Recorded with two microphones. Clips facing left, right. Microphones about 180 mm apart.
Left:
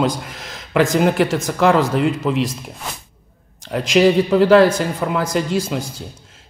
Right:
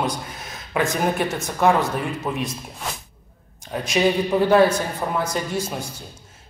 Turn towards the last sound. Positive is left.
turn(degrees=90)